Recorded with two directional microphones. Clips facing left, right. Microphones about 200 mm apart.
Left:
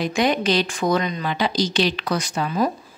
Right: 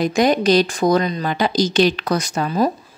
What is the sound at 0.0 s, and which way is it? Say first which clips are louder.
A woman's voice: right 4 dB; 40° right (ahead or behind).